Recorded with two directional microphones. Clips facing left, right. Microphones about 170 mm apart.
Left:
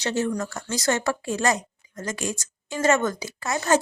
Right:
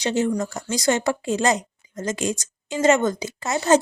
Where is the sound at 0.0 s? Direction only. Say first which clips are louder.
Right 3 dB; 20° right (ahead or behind).